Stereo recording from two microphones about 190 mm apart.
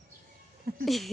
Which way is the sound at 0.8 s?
Centre (ahead or behind).